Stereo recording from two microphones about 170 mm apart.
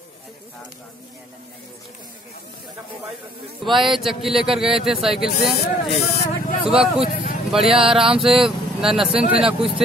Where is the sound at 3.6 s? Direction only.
Centre (ahead or behind).